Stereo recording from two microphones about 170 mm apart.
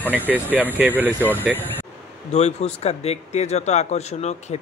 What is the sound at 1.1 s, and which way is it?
Speech, 10° left (ahead or behind).